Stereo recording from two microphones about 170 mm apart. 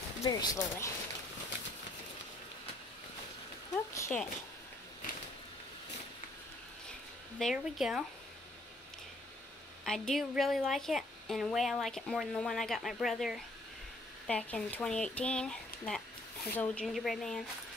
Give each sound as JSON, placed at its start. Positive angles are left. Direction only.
{"t": 0.2, "sound": "speech", "side_deg": 25}
{"t": 3.9, "sound": "a sound", "side_deg": 15}
{"t": 7.3, "sound": "a woman's voice", "side_deg": 0}
{"t": 9.8, "sound": "a woman's voice", "side_deg": 5}